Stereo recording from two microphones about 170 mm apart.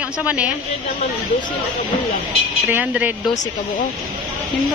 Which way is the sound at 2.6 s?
10° right (ahead or behind).